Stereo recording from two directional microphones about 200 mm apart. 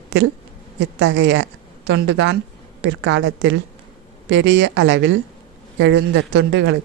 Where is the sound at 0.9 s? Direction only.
70° right (ahead or behind).